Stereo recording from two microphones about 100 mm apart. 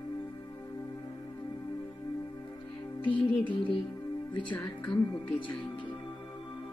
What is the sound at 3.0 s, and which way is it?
Music, 55° left (ahead or behind).